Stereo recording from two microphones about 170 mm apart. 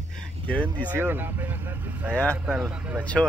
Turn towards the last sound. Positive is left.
turn(degrees=5)  # may be behind; listen again after turning